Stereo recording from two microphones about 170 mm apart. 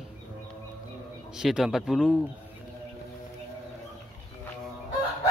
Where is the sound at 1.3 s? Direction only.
5° right (ahead or behind).